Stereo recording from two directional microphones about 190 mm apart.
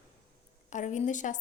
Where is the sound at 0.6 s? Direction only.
40° left (ahead or behind).